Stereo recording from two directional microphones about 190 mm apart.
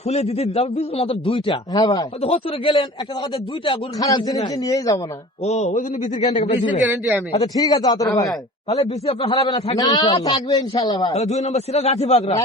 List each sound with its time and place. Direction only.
0.1 s a man's voice: 35° left (ahead or behind); by 4.9 s 20° left (ahead or behind)
5.5 s a man's voice: 35° left (ahead or behind)
7.3 s speech: 20° left (ahead or behind)
8.8 s a man's voice: 30° left (ahead or behind)
9.3 s speech: 20° left (ahead or behind)
10.1 s a man's voice: 30° left (ahead or behind)
10.8 s speech: 20° left (ahead or behind)
11.1 s a man's voice: 35° left (ahead or behind)